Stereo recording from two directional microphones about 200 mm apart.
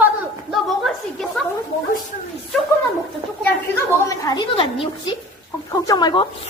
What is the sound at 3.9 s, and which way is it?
A woman's voice, 15° left (ahead or behind).